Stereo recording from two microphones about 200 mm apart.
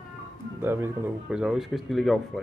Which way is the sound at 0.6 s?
10° right (ahead or behind).